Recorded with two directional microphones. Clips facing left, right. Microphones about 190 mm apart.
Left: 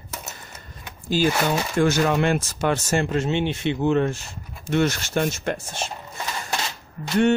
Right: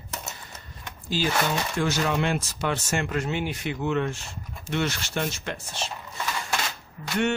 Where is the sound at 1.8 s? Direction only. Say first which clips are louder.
Left 6 dB; 50° left (ahead or behind).